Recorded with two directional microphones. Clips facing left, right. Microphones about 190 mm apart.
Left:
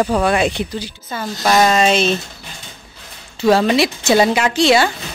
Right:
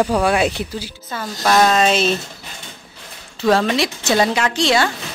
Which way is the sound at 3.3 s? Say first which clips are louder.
Left 3 dB; 5° left (ahead or behind).